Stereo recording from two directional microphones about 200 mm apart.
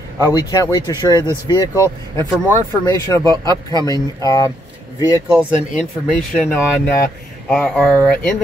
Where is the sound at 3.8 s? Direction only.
15° left (ahead or behind).